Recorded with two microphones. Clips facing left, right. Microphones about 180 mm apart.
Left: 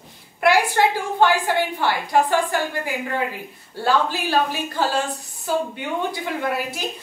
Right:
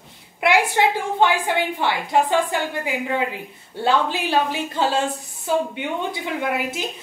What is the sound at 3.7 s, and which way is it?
A woman's voice, 25° right (ahead or behind).